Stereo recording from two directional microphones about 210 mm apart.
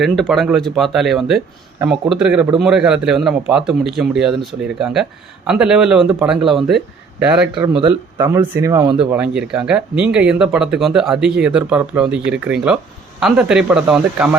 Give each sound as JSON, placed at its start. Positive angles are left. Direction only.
{"t": 0.0, "sound": "speech", "side_deg": 0}
{"t": 5.5, "sound": "speech", "side_deg": -5}
{"t": 7.8, "sound": "speech", "side_deg": -20}
{"t": 9.1, "sound": "speech", "side_deg": -5}